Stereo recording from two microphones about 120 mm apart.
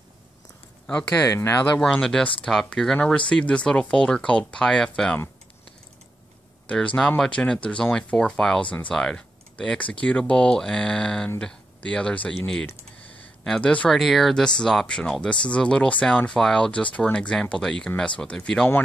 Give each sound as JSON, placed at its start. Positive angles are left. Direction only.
{"t": 1.3, "sound": "speech", "side_deg": 20}
{"t": 1.8, "sound": "speech", "side_deg": 5}
{"t": 6.7, "sound": "speech", "side_deg": 10}